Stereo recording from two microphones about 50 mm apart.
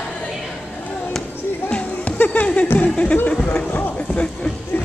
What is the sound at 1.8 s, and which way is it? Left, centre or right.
Music, left.